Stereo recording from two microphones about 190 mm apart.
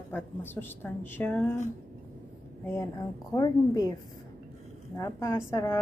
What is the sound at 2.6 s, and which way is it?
Speech, 15° left (ahead or behind).